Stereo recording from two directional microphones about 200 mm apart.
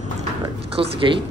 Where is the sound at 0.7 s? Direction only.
30° right (ahead or behind).